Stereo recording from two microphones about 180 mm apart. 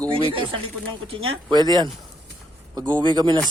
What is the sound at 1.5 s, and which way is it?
Speech, 25° right (ahead or behind).